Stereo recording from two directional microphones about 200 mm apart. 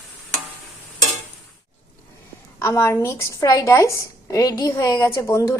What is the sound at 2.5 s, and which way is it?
A woman's voice, 15° left (ahead or behind).